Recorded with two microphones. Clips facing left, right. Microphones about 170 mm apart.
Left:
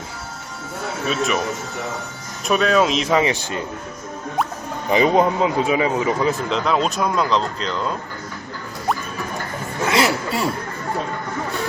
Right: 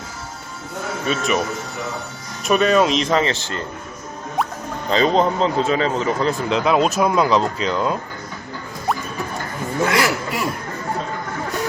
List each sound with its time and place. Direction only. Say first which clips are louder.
1.0 s a man's voice: even; centre (ahead or behind)
2.5 s a man's voice: right 1 dB; centre (ahead or behind)
4.9 s a man's voice: left 1 dB; 15° left (ahead or behind); by 7.9 s 10° right (ahead or behind)
9.9 s speech: left 1 dB; 25° left (ahead or behind)